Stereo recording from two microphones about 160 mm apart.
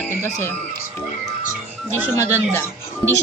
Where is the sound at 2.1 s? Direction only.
15° left (ahead or behind).